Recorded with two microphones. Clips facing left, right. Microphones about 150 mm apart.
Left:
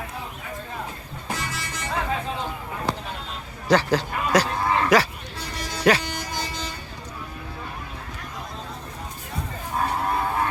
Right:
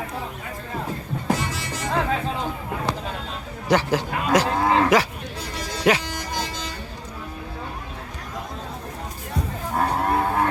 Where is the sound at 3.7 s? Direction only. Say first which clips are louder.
Even; 20° right (ahead or behind).